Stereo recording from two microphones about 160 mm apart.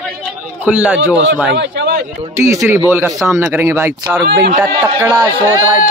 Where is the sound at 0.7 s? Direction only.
10° right (ahead or behind).